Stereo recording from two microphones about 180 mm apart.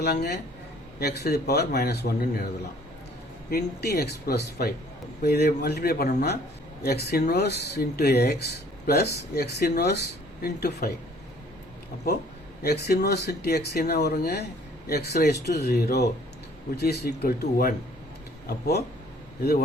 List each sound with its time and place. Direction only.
0.0 s speech: 65° left (ahead or behind)
3.5 s speech: 65° left (ahead or behind)
12.6 s speech: 60° left (ahead or behind)